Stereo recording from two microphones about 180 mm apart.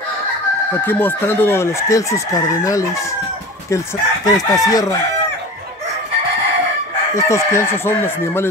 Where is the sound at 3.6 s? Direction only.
20° left (ahead or behind).